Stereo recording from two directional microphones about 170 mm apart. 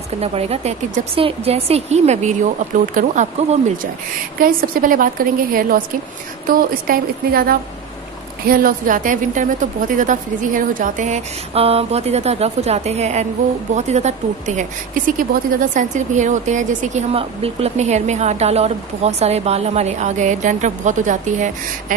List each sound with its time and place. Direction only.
0.2 s a woman's voice: 35° right (ahead or behind)
4.4 s a woman's voice: 60° right (ahead or behind)